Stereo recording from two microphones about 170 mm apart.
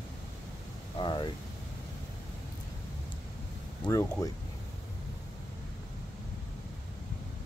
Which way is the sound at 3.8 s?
15° left (ahead or behind).